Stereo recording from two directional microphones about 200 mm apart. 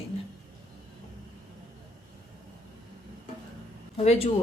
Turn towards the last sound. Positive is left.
turn(degrees=30)  # may be behind; listen again after turning